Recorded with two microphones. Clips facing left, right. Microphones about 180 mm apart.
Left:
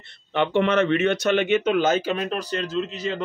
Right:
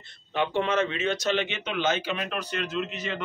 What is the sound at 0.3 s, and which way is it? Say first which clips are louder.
A man's voice: left 5 dB; 65° left (ahead or behind).